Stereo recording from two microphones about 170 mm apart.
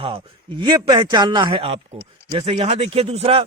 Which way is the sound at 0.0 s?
30° right (ahead or behind).